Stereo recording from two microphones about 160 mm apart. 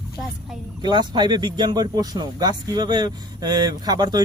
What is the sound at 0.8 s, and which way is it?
Speech, 25° right (ahead or behind).